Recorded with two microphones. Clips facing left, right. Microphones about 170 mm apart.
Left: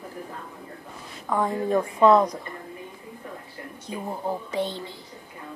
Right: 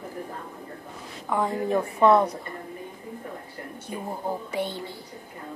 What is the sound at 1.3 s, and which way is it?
Speech, 10° right (ahead or behind).